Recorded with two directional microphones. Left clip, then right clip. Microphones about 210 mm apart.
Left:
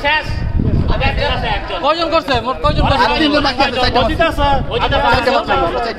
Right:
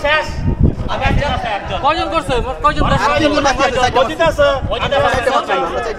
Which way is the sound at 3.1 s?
20° left (ahead or behind).